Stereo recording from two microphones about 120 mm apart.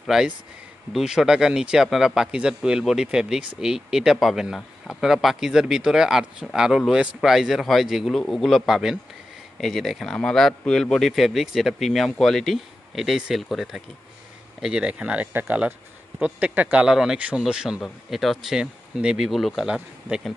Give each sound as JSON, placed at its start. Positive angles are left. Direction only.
{"t": 0.0, "sound": "speech", "side_deg": -5}